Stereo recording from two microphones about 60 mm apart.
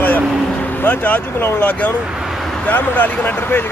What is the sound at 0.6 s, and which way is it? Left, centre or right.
Speech, left.